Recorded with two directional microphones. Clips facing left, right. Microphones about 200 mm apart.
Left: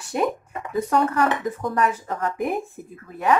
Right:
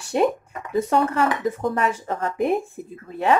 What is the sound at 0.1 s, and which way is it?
Speech, 25° right (ahead or behind).